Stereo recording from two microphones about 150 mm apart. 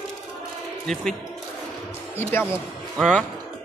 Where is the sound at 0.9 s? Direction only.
Centre (ahead or behind).